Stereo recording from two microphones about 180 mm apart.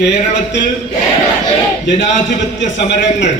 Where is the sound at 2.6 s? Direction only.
80° left.